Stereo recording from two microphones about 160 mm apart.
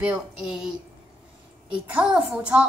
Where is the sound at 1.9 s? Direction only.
5° right (ahead or behind).